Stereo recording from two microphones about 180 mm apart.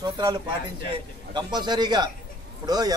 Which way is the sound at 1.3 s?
25° right (ahead or behind).